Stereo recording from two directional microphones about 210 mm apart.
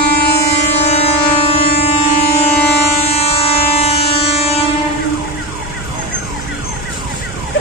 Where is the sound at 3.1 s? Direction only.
30° left (ahead or behind).